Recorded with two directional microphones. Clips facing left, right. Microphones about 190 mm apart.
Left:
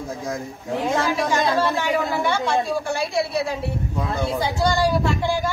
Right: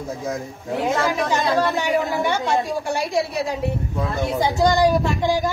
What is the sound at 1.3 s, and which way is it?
A woman's voice, 15° right (ahead or behind).